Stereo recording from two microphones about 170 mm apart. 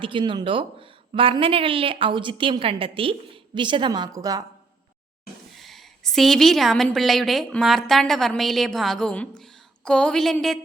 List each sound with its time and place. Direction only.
0.0 s speech: 30° right (ahead or behind)
5.5 s a woman's voice: centre (ahead or behind)